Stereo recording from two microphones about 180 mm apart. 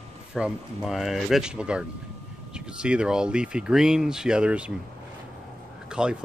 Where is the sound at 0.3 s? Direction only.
5° right (ahead or behind).